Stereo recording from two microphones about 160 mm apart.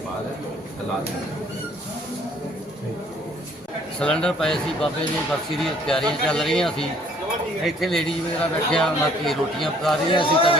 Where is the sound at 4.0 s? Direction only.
5° left (ahead or behind).